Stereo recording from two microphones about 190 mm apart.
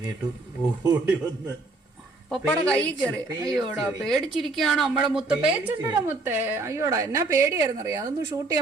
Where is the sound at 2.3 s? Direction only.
5° left (ahead or behind).